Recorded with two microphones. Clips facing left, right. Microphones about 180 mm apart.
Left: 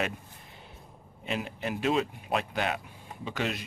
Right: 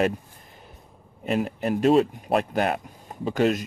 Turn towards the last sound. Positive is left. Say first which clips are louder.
# right 11 dB
turn(degrees=-45)  # may be behind; listen again after turning